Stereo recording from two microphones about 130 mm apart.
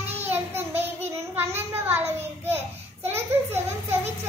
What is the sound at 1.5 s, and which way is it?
A child's voice, 15° right (ahead or behind).